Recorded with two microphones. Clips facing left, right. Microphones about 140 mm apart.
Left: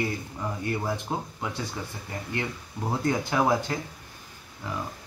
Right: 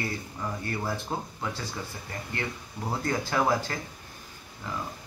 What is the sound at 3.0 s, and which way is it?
Speech, 15° left (ahead or behind).